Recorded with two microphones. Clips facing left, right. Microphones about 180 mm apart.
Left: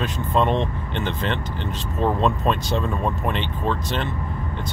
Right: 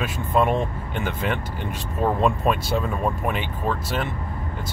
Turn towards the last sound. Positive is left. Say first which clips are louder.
# left 1 dB
turn(degrees=-10)  # may be behind; listen again after turning